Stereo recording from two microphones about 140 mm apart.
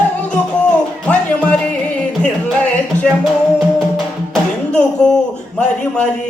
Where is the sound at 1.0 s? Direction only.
10° left (ahead or behind).